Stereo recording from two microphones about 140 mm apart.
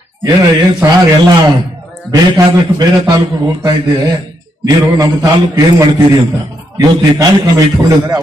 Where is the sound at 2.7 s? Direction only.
30° right (ahead or behind).